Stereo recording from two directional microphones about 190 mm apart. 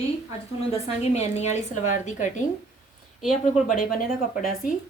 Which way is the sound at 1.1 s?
35° left (ahead or behind).